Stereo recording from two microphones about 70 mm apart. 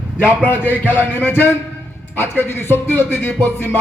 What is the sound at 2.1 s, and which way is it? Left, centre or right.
Music, left.